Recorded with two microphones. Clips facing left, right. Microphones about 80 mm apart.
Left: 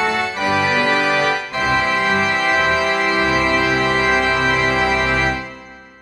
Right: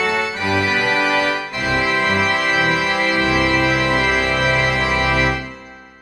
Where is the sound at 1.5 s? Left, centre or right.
Left.